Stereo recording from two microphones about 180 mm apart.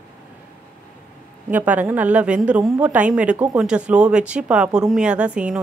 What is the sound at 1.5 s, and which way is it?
Speech, 10° right (ahead or behind).